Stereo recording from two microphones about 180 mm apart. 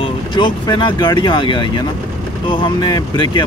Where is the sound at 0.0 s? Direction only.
25° left (ahead or behind).